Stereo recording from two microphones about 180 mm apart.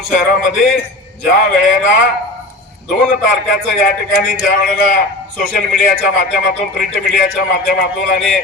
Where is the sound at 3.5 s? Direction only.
55° left (ahead or behind).